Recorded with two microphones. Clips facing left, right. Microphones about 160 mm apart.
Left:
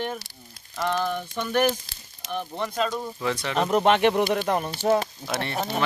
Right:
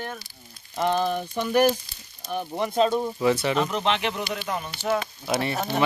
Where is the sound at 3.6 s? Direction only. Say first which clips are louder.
Left 5 dB; 45° left (ahead or behind).